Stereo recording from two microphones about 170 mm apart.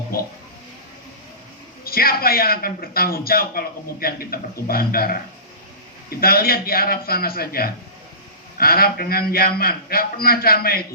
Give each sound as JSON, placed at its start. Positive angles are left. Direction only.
{"t": 1.8, "sound": "a man's voice", "side_deg": 60}